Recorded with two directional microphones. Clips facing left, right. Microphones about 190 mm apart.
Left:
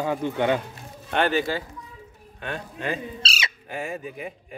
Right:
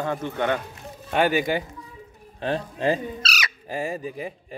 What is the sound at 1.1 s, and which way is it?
Speech, 10° right (ahead or behind).